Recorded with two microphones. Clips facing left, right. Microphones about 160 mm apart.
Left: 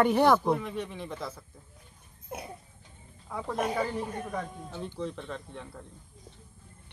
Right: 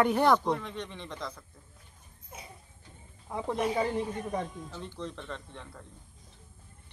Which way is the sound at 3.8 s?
20° right (ahead or behind).